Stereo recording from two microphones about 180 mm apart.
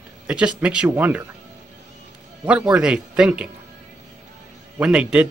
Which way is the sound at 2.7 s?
5° right (ahead or behind).